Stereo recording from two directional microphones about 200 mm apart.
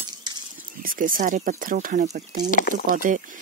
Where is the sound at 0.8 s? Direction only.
45° right (ahead or behind).